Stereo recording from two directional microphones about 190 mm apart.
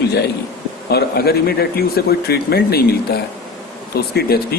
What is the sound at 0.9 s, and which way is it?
Speech, 55° left (ahead or behind).